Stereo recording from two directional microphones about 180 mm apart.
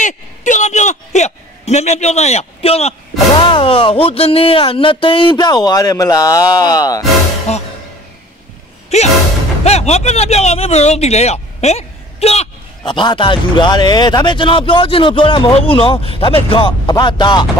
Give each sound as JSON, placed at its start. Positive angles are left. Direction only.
{"t": 0.0, "sound": "a sound", "side_deg": 45}
{"t": 3.3, "sound": "speech", "side_deg": 30}
{"t": 7.5, "sound": "speech", "side_deg": 35}
{"t": 8.9, "sound": "speech", "side_deg": 35}